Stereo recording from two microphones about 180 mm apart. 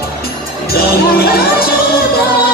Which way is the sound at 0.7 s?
60° left (ahead or behind).